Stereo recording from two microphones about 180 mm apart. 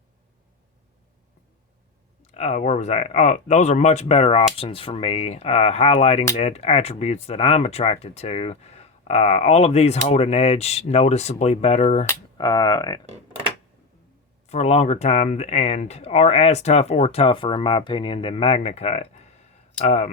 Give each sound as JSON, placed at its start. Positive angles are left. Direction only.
{"t": 2.2, "sound": "speech", "side_deg": 40}
{"t": 12.4, "sound": "speech", "side_deg": 20}
{"t": 14.4, "sound": "speech", "side_deg": 40}